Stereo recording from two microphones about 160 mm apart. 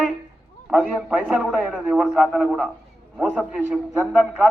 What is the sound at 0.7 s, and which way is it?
A man's voice, 5° right (ahead or behind).